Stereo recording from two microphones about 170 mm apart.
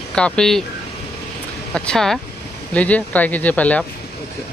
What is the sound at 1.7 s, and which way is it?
Speech, 5° left (ahead or behind).